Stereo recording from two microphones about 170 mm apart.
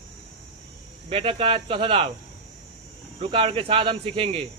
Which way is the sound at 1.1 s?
35° right (ahead or behind).